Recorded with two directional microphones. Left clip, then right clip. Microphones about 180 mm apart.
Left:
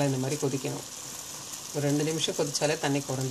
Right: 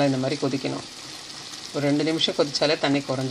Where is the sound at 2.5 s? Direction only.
35° right (ahead or behind).